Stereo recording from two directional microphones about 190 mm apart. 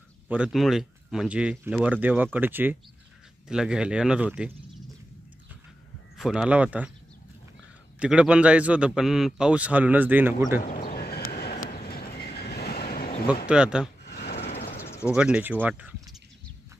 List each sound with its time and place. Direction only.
0.3 s a man's voice: 5° right (ahead or behind)
6.1 s speech: 5° right (ahead or behind)
8.0 s a man's voice: 5° right (ahead or behind)
11.0 s horse: 55° left (ahead or behind)
11.5 s train: 50° left (ahead or behind)
13.5 s speech: 5° right (ahead or behind)
14.0 s a sound: 60° left (ahead or behind)
14.5 s a sound: 30° left (ahead or behind)
14.8 s a sound: 15° left (ahead or behind)
15.1 s a man's voice: 5° right (ahead or behind)